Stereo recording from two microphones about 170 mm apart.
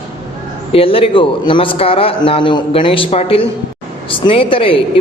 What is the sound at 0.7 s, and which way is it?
A man's voice, 35° left (ahead or behind).